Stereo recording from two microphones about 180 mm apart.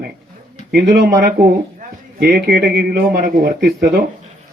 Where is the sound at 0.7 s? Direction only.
60° right (ahead or behind).